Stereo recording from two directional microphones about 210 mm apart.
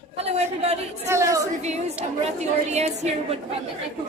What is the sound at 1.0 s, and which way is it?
Speech, 15° right (ahead or behind).